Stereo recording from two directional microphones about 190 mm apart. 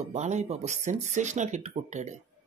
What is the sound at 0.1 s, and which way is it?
Speech, 35° right (ahead or behind).